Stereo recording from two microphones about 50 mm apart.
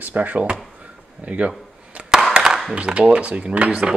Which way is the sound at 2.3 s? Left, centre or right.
Centre.